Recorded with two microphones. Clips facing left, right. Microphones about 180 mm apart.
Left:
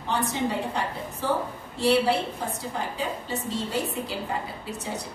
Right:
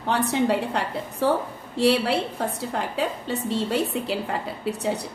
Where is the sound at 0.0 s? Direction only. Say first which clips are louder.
Right 4 dB; 65° right (ahead or behind).